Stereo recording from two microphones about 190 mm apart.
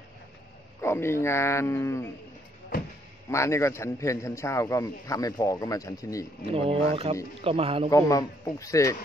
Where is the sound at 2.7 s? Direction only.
50° left (ahead or behind).